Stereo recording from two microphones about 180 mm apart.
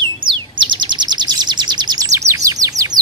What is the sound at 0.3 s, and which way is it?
Chirp, 25° right (ahead or behind).